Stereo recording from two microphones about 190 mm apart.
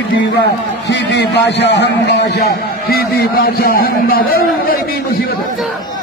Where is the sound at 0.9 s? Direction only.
60° left (ahead or behind).